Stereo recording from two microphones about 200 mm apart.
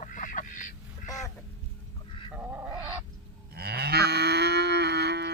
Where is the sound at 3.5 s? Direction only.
50° right (ahead or behind).